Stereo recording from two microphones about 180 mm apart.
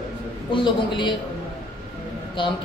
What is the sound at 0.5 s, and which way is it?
Speech, 25° left (ahead or behind).